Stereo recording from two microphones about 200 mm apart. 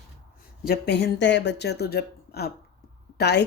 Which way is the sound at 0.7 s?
55° left (ahead or behind).